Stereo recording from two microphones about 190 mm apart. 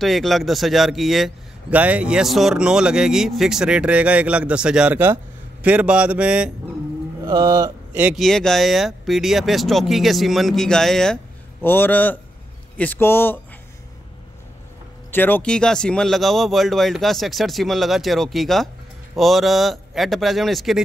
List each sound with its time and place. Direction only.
0.0 s a man's voice: centre (ahead or behind)
7.2 s speech: 20° right (ahead or behind)
7.9 s a man's voice: 5° right (ahead or behind); by 13.4 s 10° left (ahead or behind)
15.0 s a man's voice: 10° left (ahead or behind)